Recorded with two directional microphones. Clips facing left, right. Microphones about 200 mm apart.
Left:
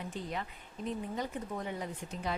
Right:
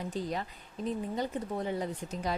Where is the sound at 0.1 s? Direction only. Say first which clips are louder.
Right 4 dB; 35° right (ahead or behind).